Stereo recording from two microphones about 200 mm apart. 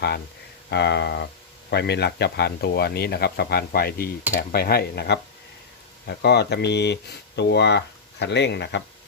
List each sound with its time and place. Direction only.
0.7 s speech: 55° left (ahead or behind)